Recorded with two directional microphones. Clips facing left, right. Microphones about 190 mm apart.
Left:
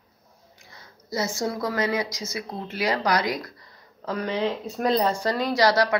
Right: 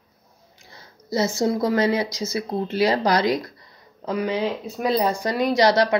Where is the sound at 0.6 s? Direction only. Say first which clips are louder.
Right 6 dB; 30° right (ahead or behind).